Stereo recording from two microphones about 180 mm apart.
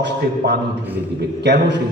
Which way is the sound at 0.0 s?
70° right (ahead or behind).